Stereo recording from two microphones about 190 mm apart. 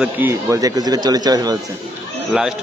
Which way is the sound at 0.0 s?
10° right (ahead or behind).